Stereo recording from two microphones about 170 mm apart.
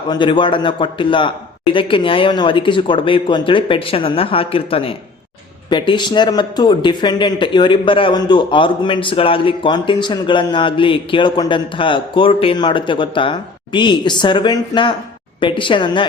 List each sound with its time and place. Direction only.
0.1 s speech: 30° left (ahead or behind)